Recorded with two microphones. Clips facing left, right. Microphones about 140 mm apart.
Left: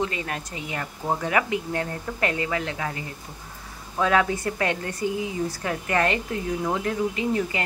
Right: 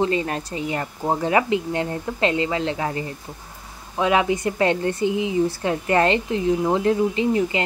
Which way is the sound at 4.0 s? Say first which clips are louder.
Right 2 dB; 20° right (ahead or behind).